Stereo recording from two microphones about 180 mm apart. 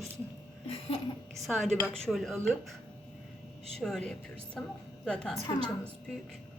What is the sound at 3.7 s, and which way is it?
Speech, centre (ahead or behind).